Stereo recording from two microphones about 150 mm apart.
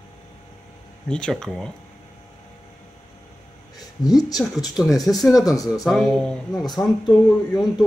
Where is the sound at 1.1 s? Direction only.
5° left (ahead or behind).